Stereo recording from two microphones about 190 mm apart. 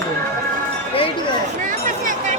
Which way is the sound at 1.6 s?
45° right (ahead or behind).